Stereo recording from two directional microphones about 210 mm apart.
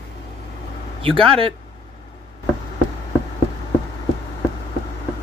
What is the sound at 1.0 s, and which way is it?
Speech, 25° right (ahead or behind).